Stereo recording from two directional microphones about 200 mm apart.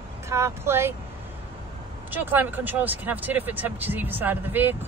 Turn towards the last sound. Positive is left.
turn(degrees=-10)  # may be behind; listen again after turning